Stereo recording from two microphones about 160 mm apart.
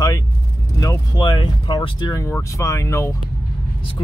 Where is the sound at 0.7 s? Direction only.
25° left (ahead or behind).